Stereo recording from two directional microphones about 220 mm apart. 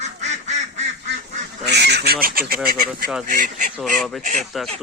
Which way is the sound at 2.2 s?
40° right (ahead or behind).